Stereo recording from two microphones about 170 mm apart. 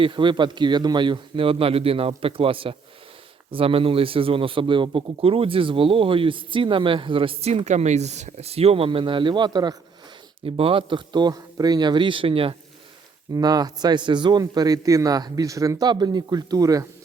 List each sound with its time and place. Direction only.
0.0 s a man's voice: 30° right (ahead or behind)